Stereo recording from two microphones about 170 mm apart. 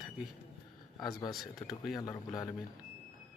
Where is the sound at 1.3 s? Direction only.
Centre (ahead or behind).